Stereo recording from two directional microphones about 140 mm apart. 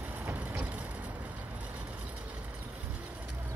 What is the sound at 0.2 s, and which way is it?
Vehicle, 15° right (ahead or behind).